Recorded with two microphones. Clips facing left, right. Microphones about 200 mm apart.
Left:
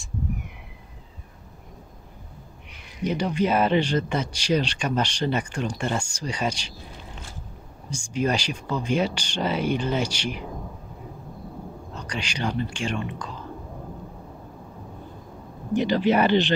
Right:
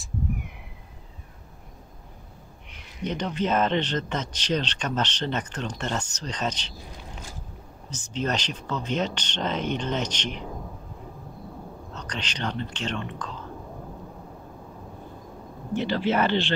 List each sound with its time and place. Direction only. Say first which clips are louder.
3.1 s speech: left 3 dB; 10° left (ahead or behind)
7.9 s speech: left 4 dB; 10° left (ahead or behind)
11.9 s speech: left 3 dB; 10° left (ahead or behind)
15.7 s speech: left 4 dB; 15° left (ahead or behind)